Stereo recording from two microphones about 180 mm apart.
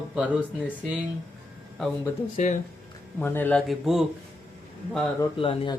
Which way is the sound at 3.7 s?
Centre (ahead or behind).